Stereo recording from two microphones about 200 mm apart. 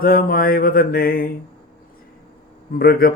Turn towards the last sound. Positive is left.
turn(degrees=45)  # may be behind; listen again after turning